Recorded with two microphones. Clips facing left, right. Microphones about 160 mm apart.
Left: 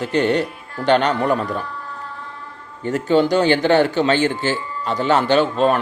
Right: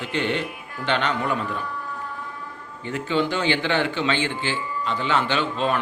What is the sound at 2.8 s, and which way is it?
A man's voice, 40° left (ahead or behind).